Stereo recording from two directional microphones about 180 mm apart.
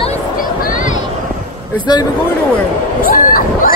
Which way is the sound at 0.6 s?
50° left (ahead or behind).